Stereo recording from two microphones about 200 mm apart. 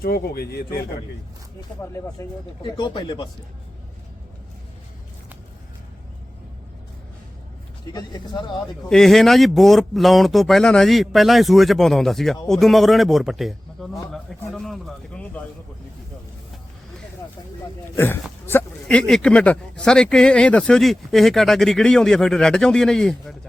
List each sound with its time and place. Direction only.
0.0 s speech: 50° left (ahead or behind)
1.8 s speech: 15° left (ahead or behind)
7.9 s speech: 20° left (ahead or behind)
8.9 s speech: centre (ahead or behind)
17.9 s speech: 10° left (ahead or behind)